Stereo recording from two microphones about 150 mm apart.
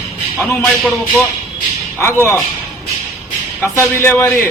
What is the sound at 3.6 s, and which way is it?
Speech, 15° left (ahead or behind).